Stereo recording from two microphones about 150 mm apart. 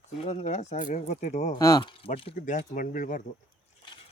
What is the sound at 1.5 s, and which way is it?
Speech, 25° left (ahead or behind).